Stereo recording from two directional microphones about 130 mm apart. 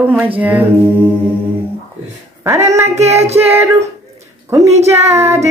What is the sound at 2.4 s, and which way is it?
Humming, 20° right (ahead or behind).